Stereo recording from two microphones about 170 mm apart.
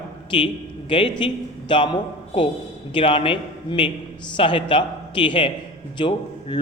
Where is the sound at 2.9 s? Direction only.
30° left (ahead or behind).